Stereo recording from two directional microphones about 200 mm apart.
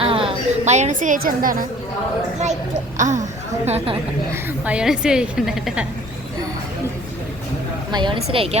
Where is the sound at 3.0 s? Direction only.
35° right (ahead or behind).